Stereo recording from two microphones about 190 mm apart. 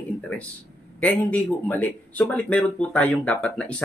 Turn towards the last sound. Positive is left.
turn(degrees=5)  # may be behind; listen again after turning